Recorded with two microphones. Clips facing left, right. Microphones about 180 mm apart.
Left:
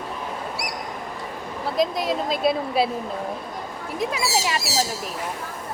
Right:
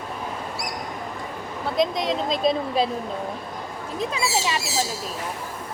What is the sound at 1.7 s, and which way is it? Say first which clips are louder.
A woman's voice: even; 5° left (ahead or behind).